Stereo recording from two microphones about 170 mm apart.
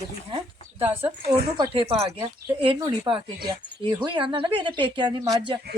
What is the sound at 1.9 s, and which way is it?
A woman's voice, 35° right (ahead or behind).